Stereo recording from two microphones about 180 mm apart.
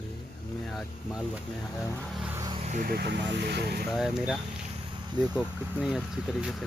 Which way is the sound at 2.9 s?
70° right (ahead or behind).